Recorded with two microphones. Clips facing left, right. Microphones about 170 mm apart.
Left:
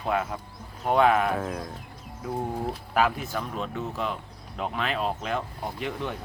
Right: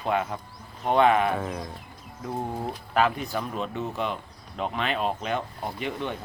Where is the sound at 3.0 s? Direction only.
5° left (ahead or behind).